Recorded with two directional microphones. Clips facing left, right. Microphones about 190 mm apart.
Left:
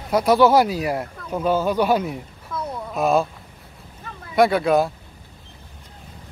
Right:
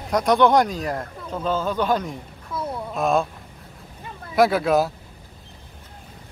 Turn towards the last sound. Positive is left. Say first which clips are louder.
# left 1 dB
turn(degrees=0)  # may be behind; listen again after turning